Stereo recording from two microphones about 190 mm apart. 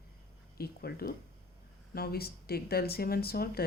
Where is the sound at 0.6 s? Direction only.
55° left (ahead or behind).